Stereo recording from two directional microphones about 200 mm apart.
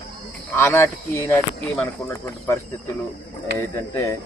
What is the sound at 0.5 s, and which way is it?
Speech, 15° left (ahead or behind).